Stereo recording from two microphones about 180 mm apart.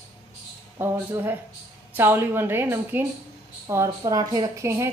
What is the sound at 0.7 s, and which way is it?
A woman's voice, 10° right (ahead or behind).